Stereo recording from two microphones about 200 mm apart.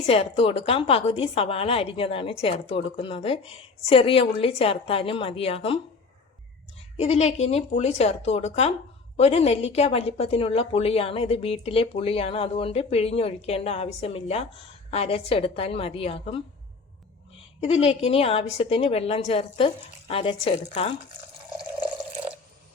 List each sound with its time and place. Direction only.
0.0 s a woman's voice: 30° left (ahead or behind)
6.9 s a woman's voice: 30° left (ahead or behind)
17.6 s a woman's voice: 30° left (ahead or behind)